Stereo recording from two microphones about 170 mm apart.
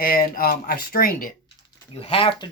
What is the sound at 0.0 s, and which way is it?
Speech, 60° left (ahead or behind).